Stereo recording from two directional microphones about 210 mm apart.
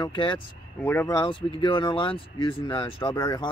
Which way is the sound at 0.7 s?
10° left (ahead or behind).